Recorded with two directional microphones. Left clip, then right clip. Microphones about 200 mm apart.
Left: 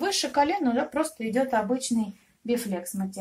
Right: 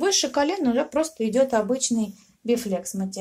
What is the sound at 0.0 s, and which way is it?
Speech, 45° right (ahead or behind).